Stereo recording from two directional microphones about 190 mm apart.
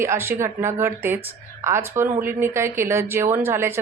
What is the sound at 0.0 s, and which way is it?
Speech, 15° right (ahead or behind).